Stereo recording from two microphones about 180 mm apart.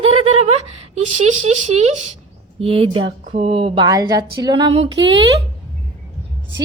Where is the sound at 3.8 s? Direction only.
20° right (ahead or behind).